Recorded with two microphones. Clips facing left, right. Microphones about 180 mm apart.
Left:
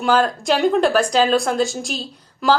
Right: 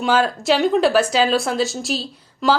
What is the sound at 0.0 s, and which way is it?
A woman's voice, 5° right (ahead or behind).